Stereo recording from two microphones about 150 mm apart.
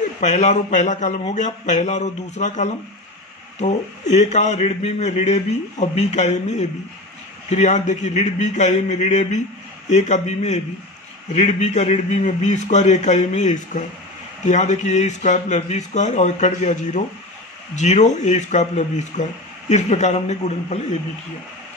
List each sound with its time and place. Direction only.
0.2 s speech: 55° left (ahead or behind)